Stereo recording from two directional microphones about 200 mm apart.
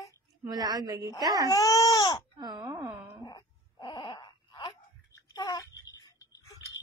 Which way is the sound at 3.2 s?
20° left (ahead or behind).